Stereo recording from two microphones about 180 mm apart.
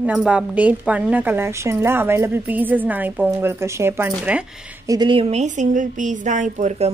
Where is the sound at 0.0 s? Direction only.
5° right (ahead or behind).